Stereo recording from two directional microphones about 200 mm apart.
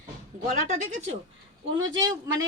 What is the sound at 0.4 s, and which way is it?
Speech, 40° right (ahead or behind).